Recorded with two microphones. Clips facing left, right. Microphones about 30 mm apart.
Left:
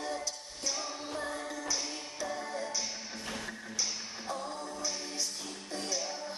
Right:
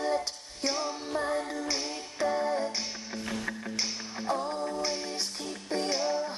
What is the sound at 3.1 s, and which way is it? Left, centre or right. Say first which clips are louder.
Music: right 5 dB; centre.